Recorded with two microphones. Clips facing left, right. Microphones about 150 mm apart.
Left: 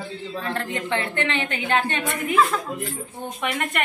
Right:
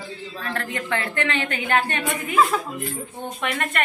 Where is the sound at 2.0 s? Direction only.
10° right (ahead or behind).